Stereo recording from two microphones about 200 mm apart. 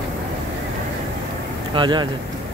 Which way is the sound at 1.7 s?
20° right (ahead or behind).